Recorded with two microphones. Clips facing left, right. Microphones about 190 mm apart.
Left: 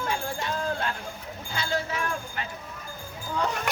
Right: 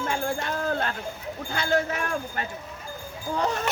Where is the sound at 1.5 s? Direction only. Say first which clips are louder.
Right 5 dB; 50° right (ahead or behind).